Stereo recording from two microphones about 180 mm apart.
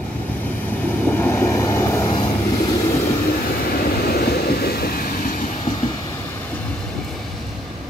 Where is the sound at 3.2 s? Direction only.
55° left (ahead or behind).